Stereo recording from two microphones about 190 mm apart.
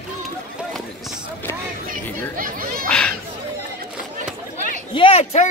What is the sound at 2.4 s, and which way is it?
Chatter, 50° right (ahead or behind).